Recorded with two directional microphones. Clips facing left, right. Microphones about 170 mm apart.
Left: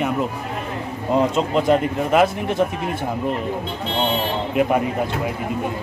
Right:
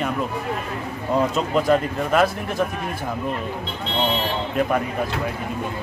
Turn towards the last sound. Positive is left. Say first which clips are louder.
# left 2 dB
turn(degrees=15)  # may be behind; listen again after turning